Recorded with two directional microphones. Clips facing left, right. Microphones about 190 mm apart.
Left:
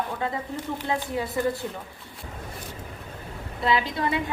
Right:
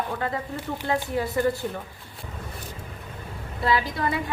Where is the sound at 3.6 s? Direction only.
20° left (ahead or behind).